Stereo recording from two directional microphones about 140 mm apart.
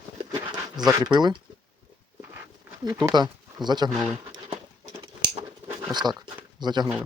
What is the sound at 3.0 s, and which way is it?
Speech, 30° right (ahead or behind).